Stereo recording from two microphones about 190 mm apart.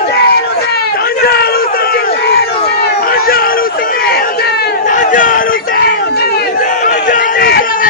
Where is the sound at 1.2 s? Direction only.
55° left (ahead or behind).